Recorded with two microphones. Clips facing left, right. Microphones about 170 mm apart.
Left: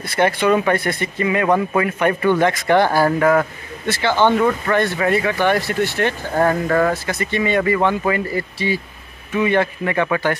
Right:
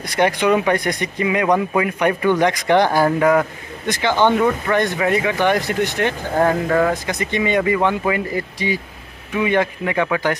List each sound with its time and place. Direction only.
0.0 s a man's voice: 15° right (ahead or behind)